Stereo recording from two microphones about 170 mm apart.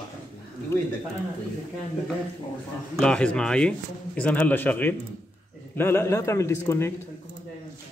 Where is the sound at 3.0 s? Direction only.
5° left (ahead or behind).